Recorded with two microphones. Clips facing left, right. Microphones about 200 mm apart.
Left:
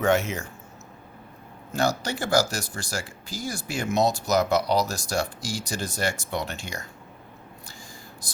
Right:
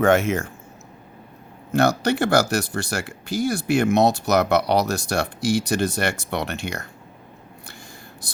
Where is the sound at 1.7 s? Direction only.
65° right (ahead or behind).